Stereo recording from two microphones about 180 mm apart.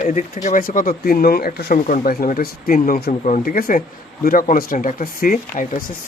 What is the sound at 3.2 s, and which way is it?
Speech, 45° left (ahead or behind).